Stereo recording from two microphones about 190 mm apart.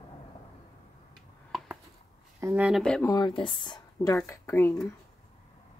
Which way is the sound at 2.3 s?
10° right (ahead or behind).